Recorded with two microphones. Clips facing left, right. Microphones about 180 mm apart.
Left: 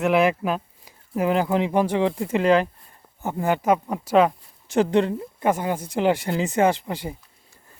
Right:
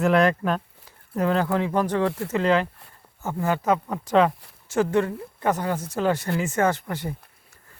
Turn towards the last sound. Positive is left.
turn(degrees=15)  # may be behind; listen again after turning